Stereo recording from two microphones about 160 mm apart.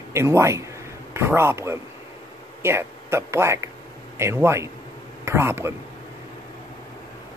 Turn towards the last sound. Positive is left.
turn(degrees=-15)  # may be behind; listen again after turning